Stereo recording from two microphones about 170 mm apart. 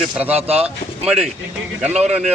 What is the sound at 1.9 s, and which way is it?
Speech, 40° right (ahead or behind).